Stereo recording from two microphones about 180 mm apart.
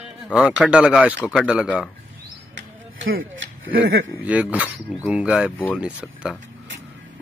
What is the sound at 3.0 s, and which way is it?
Speech, 90° right.